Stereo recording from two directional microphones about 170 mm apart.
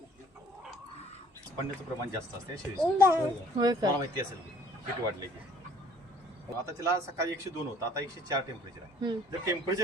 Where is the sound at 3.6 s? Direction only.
25° right (ahead or behind).